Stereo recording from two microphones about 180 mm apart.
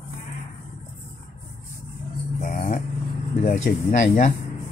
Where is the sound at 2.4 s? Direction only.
45° left (ahead or behind).